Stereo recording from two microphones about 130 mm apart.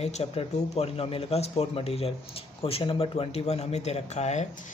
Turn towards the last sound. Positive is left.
turn(degrees=60)  # may be behind; listen again after turning